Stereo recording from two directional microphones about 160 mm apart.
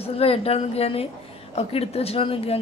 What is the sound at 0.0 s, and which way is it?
A woman's voice, 40° left (ahead or behind).